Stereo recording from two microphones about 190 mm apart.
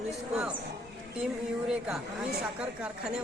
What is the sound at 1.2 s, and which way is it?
A woman's voice, centre (ahead or behind).